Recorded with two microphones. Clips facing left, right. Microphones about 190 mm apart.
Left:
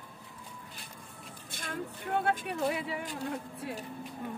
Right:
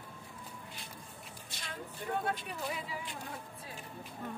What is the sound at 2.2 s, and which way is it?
Speech, 65° left (ahead or behind).